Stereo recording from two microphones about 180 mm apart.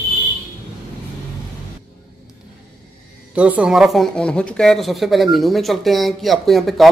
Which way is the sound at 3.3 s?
5° right (ahead or behind).